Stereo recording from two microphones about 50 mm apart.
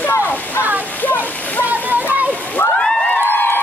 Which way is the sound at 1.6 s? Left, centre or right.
Right.